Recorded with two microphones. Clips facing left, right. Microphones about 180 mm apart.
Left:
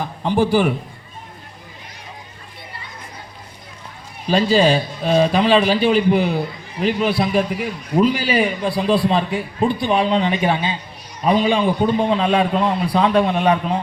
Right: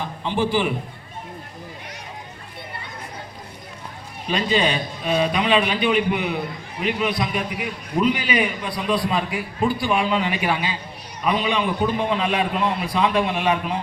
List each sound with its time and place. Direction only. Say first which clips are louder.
0.2 s speech: left 5 dB; 40° left (ahead or behind)
4.3 s a man's voice: left 6 dB; 30° left (ahead or behind)